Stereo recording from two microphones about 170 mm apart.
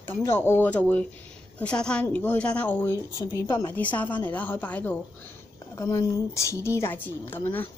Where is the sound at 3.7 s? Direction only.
10° left (ahead or behind).